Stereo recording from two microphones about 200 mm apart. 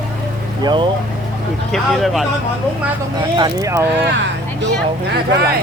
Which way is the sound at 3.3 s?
20° right (ahead or behind).